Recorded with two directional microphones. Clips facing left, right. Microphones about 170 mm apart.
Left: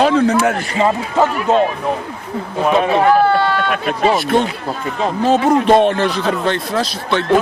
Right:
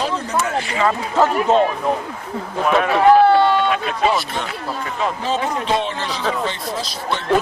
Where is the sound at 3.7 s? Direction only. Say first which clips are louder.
Left 3 dB; 55° left (ahead or behind).